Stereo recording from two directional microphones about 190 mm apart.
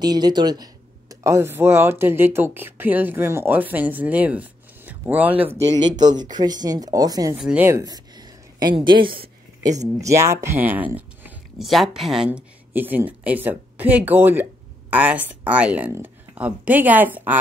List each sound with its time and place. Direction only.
0.0 s speech: 20° right (ahead or behind)
5.9 s speech: 20° right (ahead or behind)
7.3 s speech: 5° right (ahead or behind)